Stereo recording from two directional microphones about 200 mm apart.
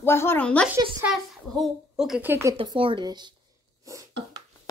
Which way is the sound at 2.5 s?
25° right (ahead or behind).